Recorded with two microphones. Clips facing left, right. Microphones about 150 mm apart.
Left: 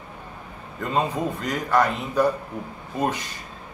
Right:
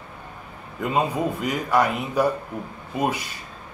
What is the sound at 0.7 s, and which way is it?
Speech, 10° right (ahead or behind).